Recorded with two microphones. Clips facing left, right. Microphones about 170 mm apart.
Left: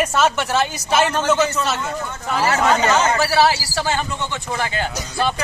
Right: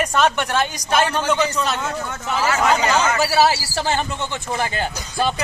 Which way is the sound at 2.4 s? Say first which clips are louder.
Left 1 dB; 30° left (ahead or behind).